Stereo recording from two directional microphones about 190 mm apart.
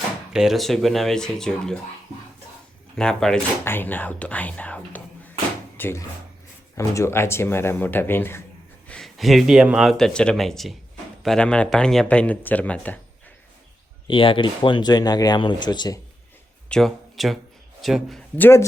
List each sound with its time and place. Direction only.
0.3 s speech: centre (ahead or behind)
2.9 s speech: 5° left (ahead or behind)
14.1 s speech: 25° left (ahead or behind)
16.6 s speech: 5° left (ahead or behind)